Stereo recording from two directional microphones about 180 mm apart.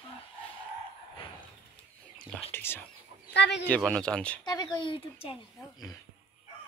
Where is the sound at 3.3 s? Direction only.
70° left (ahead or behind).